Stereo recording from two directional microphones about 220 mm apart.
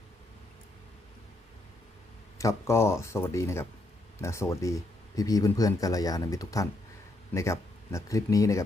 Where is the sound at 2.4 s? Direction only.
15° left (ahead or behind).